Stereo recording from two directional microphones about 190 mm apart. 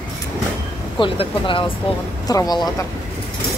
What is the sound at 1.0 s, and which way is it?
Speech, 25° left (ahead or behind).